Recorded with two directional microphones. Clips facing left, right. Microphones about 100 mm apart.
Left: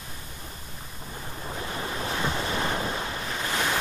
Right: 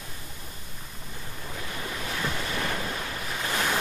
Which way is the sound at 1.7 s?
30° left (ahead or behind).